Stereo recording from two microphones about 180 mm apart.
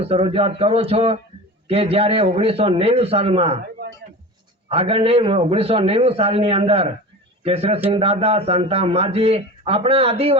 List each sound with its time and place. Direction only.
0.0 s a man's voice: 30° right (ahead or behind)
4.7 s a man's voice: 35° right (ahead or behind)